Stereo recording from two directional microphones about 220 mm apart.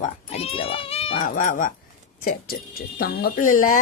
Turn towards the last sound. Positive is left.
turn(degrees=40)  # may be behind; listen again after turning